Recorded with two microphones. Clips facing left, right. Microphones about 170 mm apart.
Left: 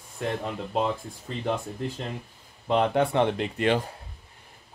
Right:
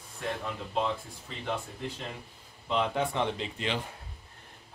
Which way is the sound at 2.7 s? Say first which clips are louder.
Left 6 dB; 55° left (ahead or behind).